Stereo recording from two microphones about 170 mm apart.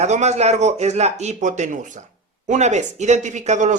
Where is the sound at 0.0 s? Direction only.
40° right (ahead or behind).